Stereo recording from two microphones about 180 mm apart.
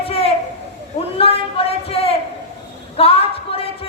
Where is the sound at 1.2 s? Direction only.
30° left (ahead or behind).